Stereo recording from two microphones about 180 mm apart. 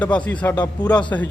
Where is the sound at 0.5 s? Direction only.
20° left (ahead or behind).